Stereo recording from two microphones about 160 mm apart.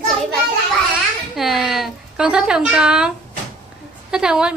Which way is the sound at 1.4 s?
Centre (ahead or behind).